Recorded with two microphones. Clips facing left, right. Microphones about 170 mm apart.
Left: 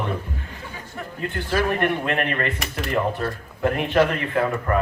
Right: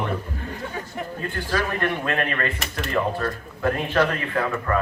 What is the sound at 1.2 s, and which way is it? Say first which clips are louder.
A man's voice: left 3 dB; 20° left (ahead or behind).